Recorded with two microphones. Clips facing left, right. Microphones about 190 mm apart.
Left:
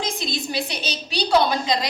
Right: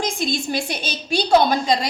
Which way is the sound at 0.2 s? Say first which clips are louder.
Right 4 dB; 50° right (ahead or behind).